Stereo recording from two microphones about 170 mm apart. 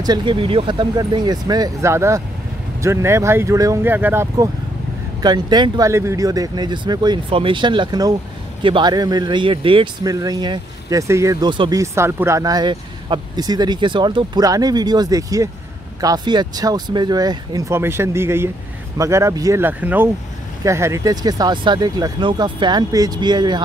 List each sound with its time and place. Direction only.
0.0 s speech: 25° right (ahead or behind)
5.2 s speech: 25° right (ahead or behind)
11.8 s speech: 15° right (ahead or behind)